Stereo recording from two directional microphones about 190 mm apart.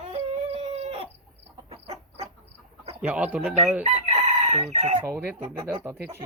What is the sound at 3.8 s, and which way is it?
Chicken, 30° right (ahead or behind).